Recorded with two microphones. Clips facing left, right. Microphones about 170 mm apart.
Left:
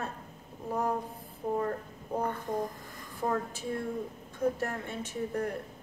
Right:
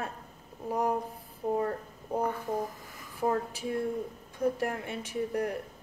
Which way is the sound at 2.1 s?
10° right (ahead or behind).